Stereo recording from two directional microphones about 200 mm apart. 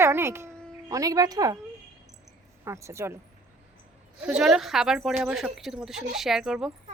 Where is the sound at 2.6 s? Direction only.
15° right (ahead or behind).